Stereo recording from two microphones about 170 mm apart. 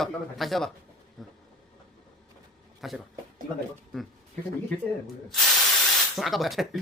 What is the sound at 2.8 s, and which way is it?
Speech, centre (ahead or behind).